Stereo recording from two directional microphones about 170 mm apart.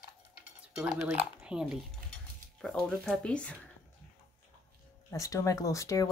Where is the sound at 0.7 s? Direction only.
Centre (ahead or behind).